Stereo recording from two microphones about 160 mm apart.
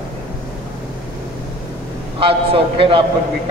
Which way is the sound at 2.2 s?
35° right (ahead or behind).